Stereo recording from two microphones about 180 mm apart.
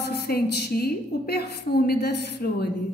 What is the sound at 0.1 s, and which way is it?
A woman's voice, 60° left (ahead or behind).